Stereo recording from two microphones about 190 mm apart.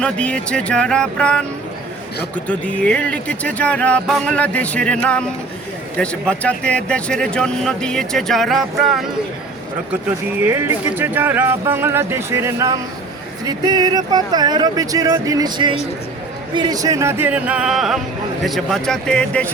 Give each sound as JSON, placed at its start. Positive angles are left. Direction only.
{"t": 0.0, "sound": "speech", "side_deg": 5}
{"t": 10.4, "sound": "speech", "side_deg": -10}